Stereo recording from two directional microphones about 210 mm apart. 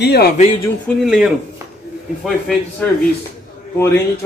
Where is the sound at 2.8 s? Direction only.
10° left (ahead or behind).